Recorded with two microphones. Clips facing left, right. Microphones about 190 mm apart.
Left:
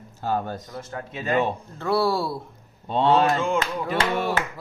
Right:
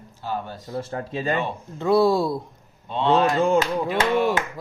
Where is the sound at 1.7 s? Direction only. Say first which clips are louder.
Right 5 dB; 15° right (ahead or behind).